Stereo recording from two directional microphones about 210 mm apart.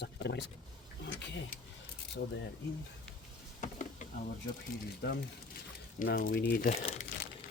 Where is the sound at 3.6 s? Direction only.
35° left (ahead or behind).